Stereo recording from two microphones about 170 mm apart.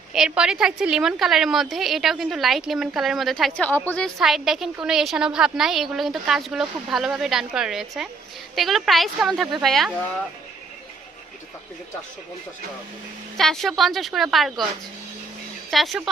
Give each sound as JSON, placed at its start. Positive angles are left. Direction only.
{"t": 0.1, "sound": "a woman's voice", "side_deg": -5}
{"t": 13.3, "sound": "a woman's voice", "side_deg": 0}
{"t": 15.7, "sound": "a woman's voice", "side_deg": 0}